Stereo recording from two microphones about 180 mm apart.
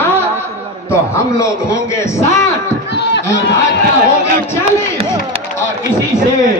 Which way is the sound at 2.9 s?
70° left (ahead or behind).